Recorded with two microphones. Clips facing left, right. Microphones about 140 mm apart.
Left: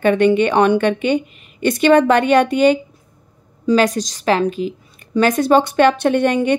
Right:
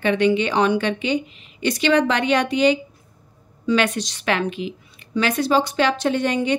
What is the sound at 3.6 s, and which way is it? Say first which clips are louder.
A woman's voice: left 5 dB; 40° left (ahead or behind).